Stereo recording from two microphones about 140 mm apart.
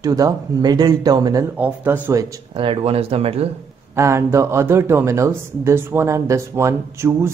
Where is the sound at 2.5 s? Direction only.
45° right (ahead or behind).